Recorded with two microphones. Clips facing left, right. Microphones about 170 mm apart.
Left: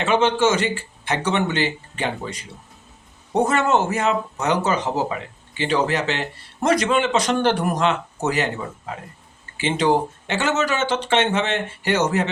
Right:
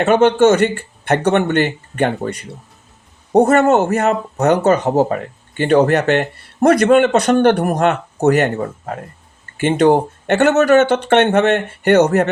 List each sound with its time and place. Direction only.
0.0 s speech: 55° right (ahead or behind)